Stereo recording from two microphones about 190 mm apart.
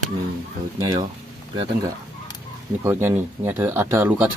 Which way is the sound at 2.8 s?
15° right (ahead or behind).